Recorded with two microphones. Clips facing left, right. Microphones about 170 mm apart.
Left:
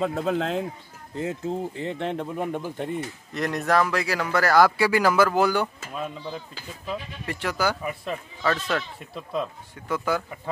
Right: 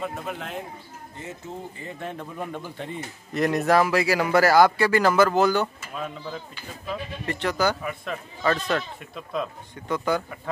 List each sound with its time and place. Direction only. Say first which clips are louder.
0.0 s speech: left 7 dB; 90° left
1.8 s speech: left 6 dB; 75° left (ahead or behind)
2.1 s speech: left 5 dB; 20° left (ahead or behind)
3.3 s speech: right 3 dB; 5° right (ahead or behind)